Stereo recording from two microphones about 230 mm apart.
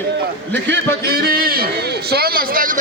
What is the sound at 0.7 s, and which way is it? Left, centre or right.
A man's voice, right.